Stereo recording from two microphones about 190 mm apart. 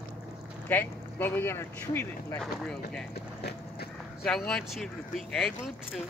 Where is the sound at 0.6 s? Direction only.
10° left (ahead or behind).